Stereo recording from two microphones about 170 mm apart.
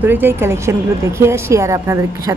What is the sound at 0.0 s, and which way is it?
A woman's voice, 10° right (ahead or behind).